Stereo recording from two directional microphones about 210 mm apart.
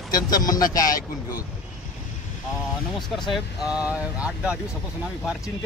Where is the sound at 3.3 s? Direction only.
5° right (ahead or behind).